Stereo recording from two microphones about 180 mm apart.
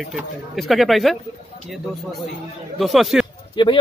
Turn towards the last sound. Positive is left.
turn(degrees=25)  # may be behind; listen again after turning